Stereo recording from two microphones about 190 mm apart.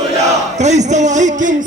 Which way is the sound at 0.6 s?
40° right (ahead or behind).